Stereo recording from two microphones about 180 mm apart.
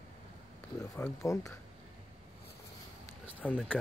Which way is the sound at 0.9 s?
15° left (ahead or behind).